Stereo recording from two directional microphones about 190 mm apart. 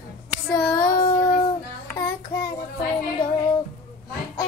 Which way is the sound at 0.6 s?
20° left (ahead or behind).